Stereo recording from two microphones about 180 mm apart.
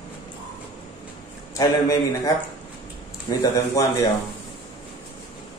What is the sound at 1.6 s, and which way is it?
A man's voice, 20° left (ahead or behind).